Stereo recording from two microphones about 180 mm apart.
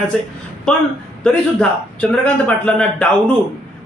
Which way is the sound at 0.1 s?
Centre (ahead or behind).